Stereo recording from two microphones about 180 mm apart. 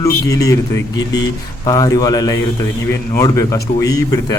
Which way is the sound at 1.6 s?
20° left (ahead or behind).